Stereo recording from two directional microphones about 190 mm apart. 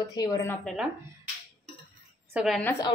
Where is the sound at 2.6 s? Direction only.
10° left (ahead or behind).